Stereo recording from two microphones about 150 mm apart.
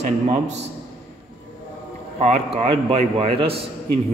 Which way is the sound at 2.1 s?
45° right (ahead or behind).